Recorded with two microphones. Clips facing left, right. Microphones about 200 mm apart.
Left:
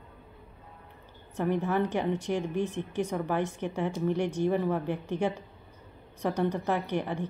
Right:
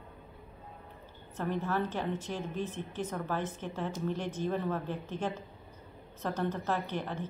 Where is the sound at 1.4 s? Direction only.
15° left (ahead or behind).